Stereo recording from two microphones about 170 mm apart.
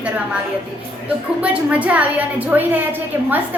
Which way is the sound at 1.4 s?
10° right (ahead or behind).